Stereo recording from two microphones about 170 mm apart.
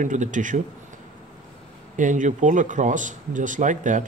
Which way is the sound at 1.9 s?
50° right (ahead or behind).